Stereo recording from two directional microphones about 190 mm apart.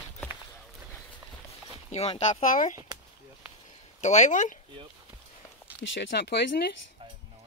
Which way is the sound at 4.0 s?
40° left (ahead or behind).